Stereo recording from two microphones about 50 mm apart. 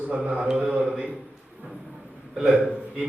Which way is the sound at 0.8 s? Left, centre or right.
Right.